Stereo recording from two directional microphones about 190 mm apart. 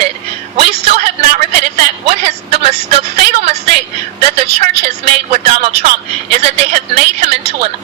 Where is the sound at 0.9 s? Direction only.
35° right (ahead or behind).